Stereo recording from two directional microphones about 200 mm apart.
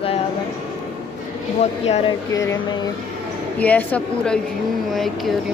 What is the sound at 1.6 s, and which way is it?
Speech, 35° left (ahead or behind).